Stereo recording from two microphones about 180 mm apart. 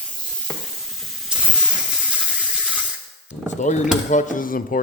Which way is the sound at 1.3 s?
5° right (ahead or behind).